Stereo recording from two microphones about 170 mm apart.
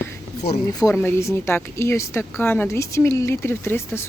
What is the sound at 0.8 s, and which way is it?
Speech, 15° left (ahead or behind).